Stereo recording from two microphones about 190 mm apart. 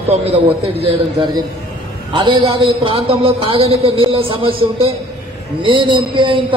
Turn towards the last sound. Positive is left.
turn(degrees=-25)  # may be behind; listen again after turning